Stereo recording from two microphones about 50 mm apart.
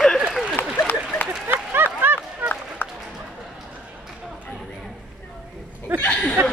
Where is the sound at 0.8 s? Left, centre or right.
Left.